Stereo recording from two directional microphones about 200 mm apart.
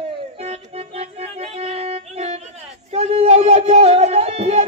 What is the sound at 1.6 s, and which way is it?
Music, 30° right (ahead or behind).